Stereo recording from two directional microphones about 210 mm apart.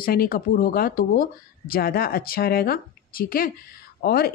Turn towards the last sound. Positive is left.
turn(degrees=45)  # may be behind; listen again after turning